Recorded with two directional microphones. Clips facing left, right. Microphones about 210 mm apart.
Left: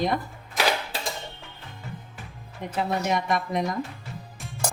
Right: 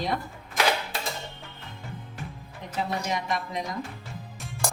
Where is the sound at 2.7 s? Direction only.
55° left (ahead or behind).